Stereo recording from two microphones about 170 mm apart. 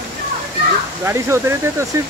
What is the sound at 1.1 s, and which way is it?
Speech, 15° right (ahead or behind).